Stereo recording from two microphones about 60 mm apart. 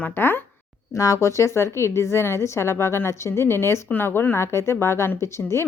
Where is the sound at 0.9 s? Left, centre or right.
Left.